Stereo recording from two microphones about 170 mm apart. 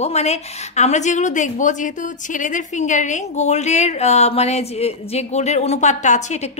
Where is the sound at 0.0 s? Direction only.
40° left (ahead or behind).